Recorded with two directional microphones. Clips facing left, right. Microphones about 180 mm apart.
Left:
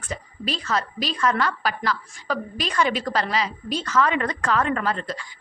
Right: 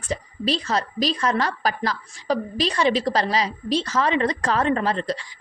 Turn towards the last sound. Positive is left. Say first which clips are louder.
# right 3 dB
turn(degrees=-35)  # may be behind; listen again after turning